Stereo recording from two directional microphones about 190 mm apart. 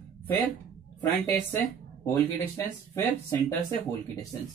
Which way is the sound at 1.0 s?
10° left (ahead or behind).